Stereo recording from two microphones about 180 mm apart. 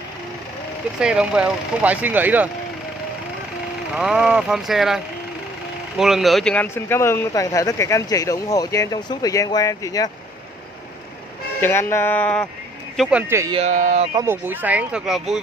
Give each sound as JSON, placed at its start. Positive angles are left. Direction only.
{"t": 0.9, "sound": "speech", "side_deg": -5}
{"t": 3.9, "sound": "speech", "side_deg": -5}
{"t": 11.6, "sound": "speech", "side_deg": 15}
{"t": 13.3, "sound": "speech", "side_deg": -15}
{"t": 13.6, "sound": "speech", "side_deg": -40}
{"t": 14.1, "sound": "speech", "side_deg": -10}